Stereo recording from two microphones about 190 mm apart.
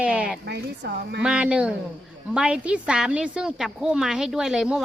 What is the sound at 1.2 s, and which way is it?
Speech, 5° right (ahead or behind).